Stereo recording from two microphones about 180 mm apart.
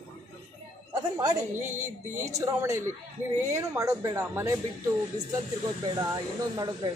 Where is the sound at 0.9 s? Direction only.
20° right (ahead or behind).